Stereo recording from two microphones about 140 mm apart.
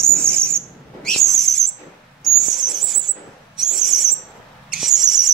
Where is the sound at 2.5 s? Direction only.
Centre (ahead or behind).